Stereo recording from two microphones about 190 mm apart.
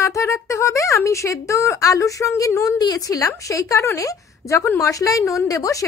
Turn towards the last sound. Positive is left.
turn(degrees=20)  # may be behind; listen again after turning